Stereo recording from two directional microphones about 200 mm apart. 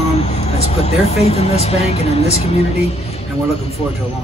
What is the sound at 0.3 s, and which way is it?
Speech, 30° left (ahead or behind).